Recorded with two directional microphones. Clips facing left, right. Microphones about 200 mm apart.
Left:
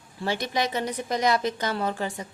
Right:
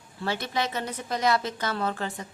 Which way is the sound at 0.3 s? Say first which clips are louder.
Left 2 dB; 15° left (ahead or behind).